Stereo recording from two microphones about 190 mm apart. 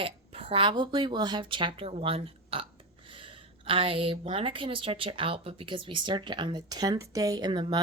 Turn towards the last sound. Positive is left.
turn(degrees=-25)  # may be behind; listen again after turning